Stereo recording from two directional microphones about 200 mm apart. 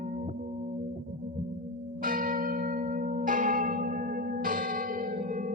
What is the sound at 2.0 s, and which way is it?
Church bell, 45° right (ahead or behind).